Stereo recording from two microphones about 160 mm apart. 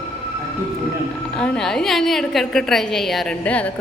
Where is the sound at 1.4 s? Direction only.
5° left (ahead or behind).